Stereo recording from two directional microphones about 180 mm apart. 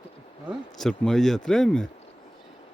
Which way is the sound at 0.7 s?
Centre (ahead or behind).